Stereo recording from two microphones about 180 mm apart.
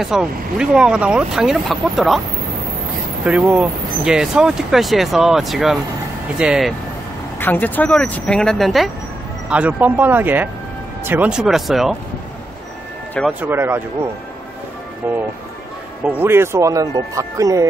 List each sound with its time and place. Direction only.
0.0 s speech: 5° right (ahead or behind)
3.3 s speech: 5° right (ahead or behind)
7.3 s speech: 10° left (ahead or behind)
13.3 s speech: 10° right (ahead or behind)
15.0 s speech: 10° right (ahead or behind)